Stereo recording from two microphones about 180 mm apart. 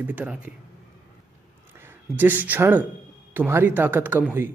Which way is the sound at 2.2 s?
10° right (ahead or behind).